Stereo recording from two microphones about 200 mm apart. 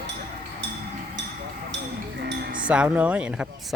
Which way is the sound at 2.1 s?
60° right (ahead or behind).